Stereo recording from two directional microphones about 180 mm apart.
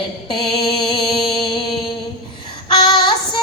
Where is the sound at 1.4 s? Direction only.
25° left (ahead or behind).